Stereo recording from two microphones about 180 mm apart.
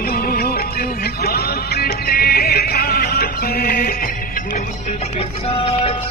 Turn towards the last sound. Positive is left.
turn(degrees=30)  # may be behind; listen again after turning